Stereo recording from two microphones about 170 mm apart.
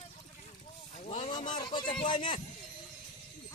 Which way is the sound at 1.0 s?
30° left (ahead or behind).